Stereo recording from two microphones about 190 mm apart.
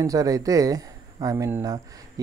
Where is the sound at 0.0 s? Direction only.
20° right (ahead or behind).